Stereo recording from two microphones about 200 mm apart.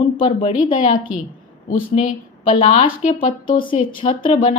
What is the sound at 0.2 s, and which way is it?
Speech, 25° left (ahead or behind).